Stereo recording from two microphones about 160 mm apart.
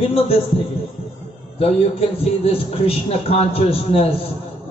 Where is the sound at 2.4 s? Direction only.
35° left (ahead or behind).